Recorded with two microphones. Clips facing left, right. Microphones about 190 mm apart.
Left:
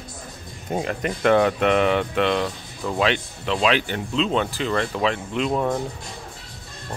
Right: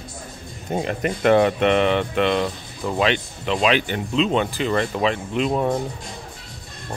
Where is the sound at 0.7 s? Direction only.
5° right (ahead or behind).